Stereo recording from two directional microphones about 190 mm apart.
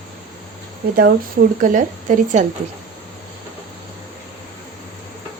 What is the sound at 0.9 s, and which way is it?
A woman's voice, 50° right (ahead or behind).